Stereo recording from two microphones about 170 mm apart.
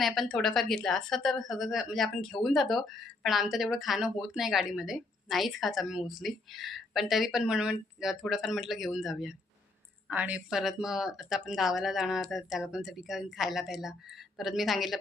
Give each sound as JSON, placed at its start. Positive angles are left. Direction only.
{"t": 0.0, "sound": "speech", "side_deg": 0}